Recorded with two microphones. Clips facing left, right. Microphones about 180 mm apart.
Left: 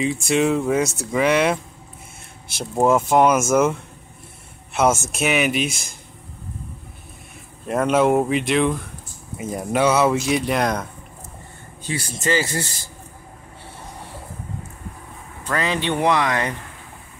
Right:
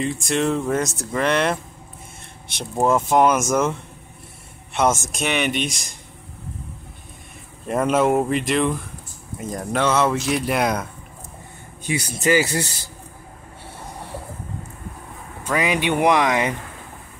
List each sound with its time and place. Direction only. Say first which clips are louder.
0.0 s speech: left 2 dB; centre (ahead or behind)
4.7 s speech: left 1 dB; 5° left (ahead or behind)
7.6 s speech: left 1 dB; centre (ahead or behind)
11.8 s speech: right 3 dB; 15° right (ahead or behind)
15.4 s speech: right 2 dB; 15° right (ahead or behind)